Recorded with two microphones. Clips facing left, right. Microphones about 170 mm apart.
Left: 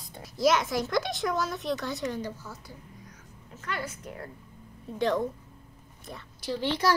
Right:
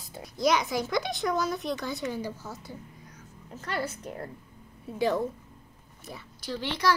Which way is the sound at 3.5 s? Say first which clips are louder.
Right 3 dB; 35° right (ahead or behind).